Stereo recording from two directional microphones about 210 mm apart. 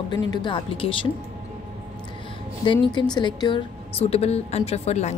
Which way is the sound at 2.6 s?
25° left (ahead or behind).